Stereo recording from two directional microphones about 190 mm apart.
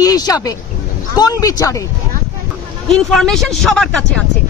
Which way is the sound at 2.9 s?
Centre (ahead or behind).